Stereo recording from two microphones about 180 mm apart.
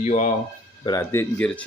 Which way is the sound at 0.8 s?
15° left (ahead or behind).